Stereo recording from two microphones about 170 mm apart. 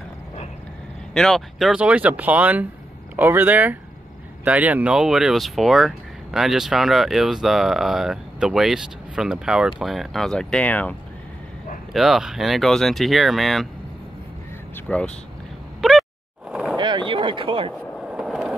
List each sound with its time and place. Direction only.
1.1 s speech: centre (ahead or behind)
11.9 s speech: centre (ahead or behind)
14.9 s speech: 5° left (ahead or behind)
15.8 s a sound: centre (ahead or behind)
16.7 s a sound: 25° right (ahead or behind)
18.0 s skateboard: 5° right (ahead or behind)